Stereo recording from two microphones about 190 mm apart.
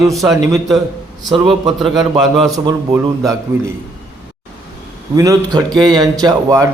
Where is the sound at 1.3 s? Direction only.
25° right (ahead or behind).